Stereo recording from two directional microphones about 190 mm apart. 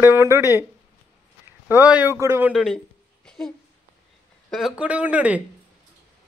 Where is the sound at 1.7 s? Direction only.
10° right (ahead or behind).